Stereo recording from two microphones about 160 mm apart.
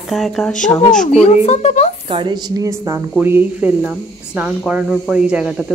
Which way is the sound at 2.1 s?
30° right (ahead or behind).